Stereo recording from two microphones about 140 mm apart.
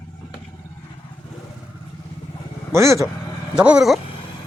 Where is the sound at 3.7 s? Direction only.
5° right (ahead or behind).